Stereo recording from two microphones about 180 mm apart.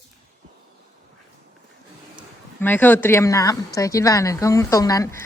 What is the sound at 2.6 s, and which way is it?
Speech, 10° left (ahead or behind).